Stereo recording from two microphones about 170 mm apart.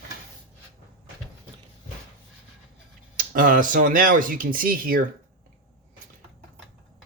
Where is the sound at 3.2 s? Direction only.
50° right (ahead or behind).